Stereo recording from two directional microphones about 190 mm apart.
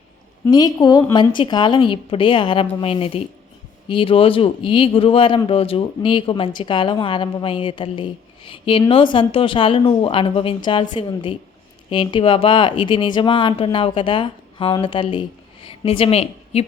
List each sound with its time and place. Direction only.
0.4 s speech: 20° left (ahead or behind)